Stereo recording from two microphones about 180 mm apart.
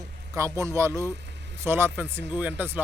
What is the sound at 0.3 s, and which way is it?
Speech, 15° right (ahead or behind).